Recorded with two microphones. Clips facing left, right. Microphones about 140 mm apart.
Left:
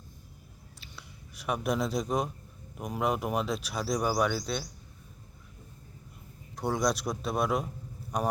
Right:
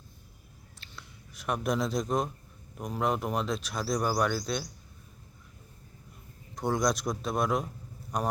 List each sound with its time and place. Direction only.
0.8 s a sound: 5° left (ahead or behind)
2.7 s speech: 5° left (ahead or behind)
6.6 s speech: 5° left (ahead or behind)